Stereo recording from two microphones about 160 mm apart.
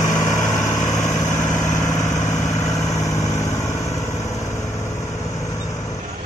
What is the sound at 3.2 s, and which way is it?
Vehicle, 15° left (ahead or behind).